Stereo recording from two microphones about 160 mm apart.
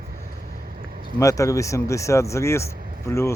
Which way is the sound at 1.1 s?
20° left (ahead or behind).